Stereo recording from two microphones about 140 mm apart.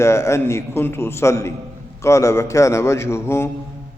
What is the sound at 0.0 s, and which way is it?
A man's voice, 20° left (ahead or behind).